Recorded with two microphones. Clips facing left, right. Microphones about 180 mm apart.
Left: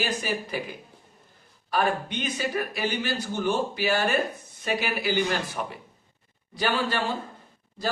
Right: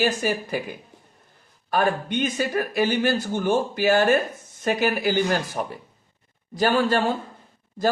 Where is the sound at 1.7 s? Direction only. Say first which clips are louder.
Right 3 dB; 50° right (ahead or behind).